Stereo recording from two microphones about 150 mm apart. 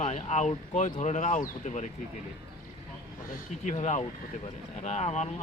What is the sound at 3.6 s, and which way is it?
Speech, 50° left (ahead or behind).